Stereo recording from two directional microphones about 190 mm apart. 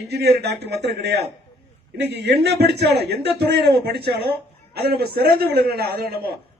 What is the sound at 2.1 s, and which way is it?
A man's voice, 60° right (ahead or behind).